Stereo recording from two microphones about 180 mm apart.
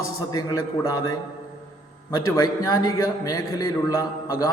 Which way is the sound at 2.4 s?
20° left (ahead or behind).